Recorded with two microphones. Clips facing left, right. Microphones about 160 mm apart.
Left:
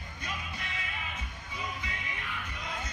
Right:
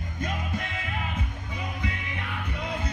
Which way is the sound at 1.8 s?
65° right (ahead or behind).